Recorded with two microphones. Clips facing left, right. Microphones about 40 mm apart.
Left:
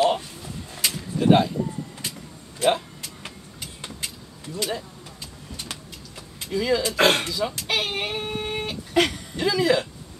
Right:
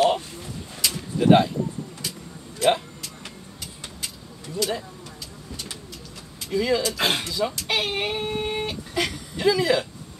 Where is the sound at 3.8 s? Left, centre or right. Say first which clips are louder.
Left 2 dB; left.